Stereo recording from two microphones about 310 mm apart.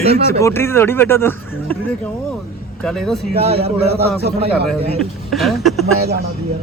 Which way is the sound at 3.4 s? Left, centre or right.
Centre.